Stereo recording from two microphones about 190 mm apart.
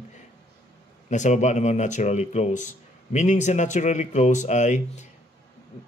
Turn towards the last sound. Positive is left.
turn(degrees=40)  # may be behind; listen again after turning